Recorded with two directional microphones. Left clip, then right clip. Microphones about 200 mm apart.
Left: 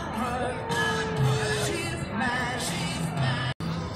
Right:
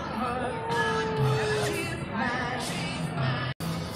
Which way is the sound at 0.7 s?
50° left (ahead or behind).